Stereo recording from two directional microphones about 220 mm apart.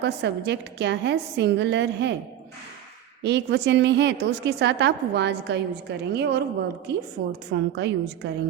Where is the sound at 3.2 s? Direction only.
50° right (ahead or behind).